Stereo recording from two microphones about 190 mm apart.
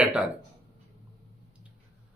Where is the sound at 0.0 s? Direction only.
5° right (ahead or behind).